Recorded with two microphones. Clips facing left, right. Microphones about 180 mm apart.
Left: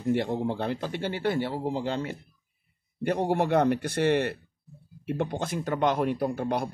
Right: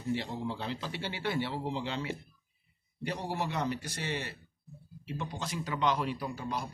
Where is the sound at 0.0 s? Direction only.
55° left (ahead or behind).